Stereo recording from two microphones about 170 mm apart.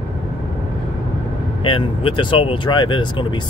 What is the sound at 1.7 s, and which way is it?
Speech, 30° left (ahead or behind).